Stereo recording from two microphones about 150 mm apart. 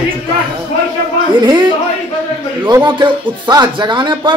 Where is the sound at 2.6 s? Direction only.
30° right (ahead or behind).